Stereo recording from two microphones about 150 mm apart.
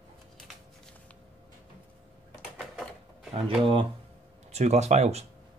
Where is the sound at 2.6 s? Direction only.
Centre (ahead or behind).